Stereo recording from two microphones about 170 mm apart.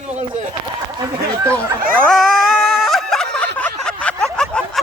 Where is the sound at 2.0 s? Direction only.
Centre (ahead or behind).